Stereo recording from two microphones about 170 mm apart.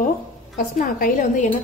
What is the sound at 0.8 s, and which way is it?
Speech, 50° left (ahead or behind).